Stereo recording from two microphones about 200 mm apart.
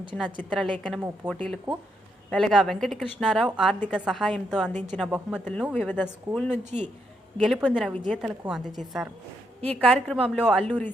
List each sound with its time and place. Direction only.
0.1 s speech: 10° left (ahead or behind)
4.7 s speech: 10° left (ahead or behind)
5.0 s speech: 5° right (ahead or behind)
5.7 s speech: 10° left (ahead or behind)
6.7 s speech: 35° right (ahead or behind)
7.3 s speech: centre (ahead or behind)